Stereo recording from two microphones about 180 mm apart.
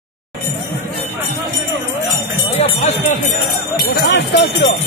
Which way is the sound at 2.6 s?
40° left (ahead or behind).